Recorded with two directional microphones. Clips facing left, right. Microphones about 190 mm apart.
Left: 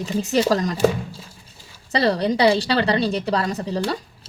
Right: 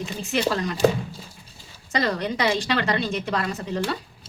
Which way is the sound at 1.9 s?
35° left (ahead or behind).